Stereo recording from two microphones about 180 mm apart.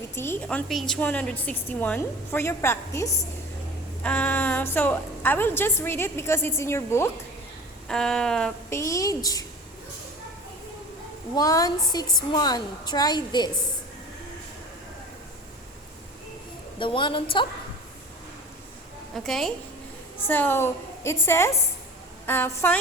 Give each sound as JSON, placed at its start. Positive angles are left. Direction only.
{"t": 0.2, "sound": "a woman's voice", "side_deg": 10}
{"t": 7.9, "sound": "a sound", "side_deg": 0}
{"t": 8.7, "sound": "a woman's voice", "side_deg": 15}
{"t": 11.3, "sound": "a woman's voice", "side_deg": 20}
{"t": 16.7, "sound": "a woman's voice", "side_deg": 25}
{"t": 19.1, "sound": "a sound", "side_deg": 0}
{"t": 20.2, "sound": "a woman's voice", "side_deg": 10}